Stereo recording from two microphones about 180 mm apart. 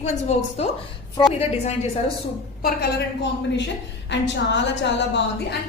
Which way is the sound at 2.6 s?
65° left (ahead or behind).